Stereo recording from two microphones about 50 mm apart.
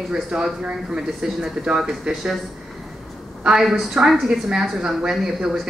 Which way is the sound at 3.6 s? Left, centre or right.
Centre.